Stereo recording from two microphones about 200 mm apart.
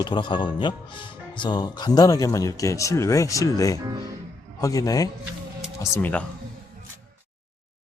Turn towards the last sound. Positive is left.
turn(degrees=10)  # may be behind; listen again after turning